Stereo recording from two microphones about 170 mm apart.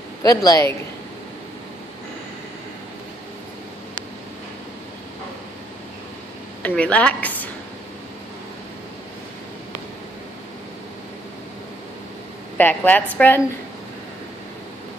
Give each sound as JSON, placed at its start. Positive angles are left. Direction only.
{"t": 0.2, "sound": "a man's voice", "side_deg": 20}
{"t": 6.8, "sound": "a woman's voice", "side_deg": 5}
{"t": 12.5, "sound": "a woman's voice", "side_deg": 10}